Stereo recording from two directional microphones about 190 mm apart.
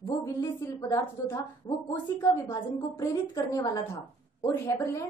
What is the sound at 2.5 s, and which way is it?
A woman's voice, 20° left (ahead or behind).